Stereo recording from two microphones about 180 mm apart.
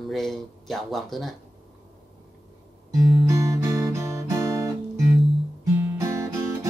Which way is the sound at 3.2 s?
15° right (ahead or behind).